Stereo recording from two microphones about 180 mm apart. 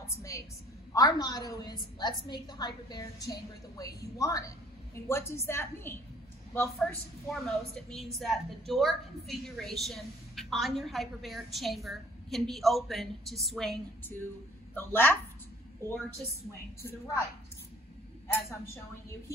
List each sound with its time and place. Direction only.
0.0 s a woman's voice: 15° left (ahead or behind)
18.3 s a woman's voice: 15° left (ahead or behind)